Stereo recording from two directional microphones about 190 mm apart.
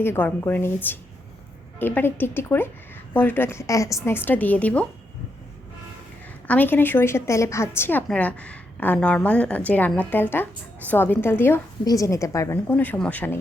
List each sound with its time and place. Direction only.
0.0 s a woman's voice: 10° left (ahead or behind)
6.5 s a woman's voice: 10° left (ahead or behind)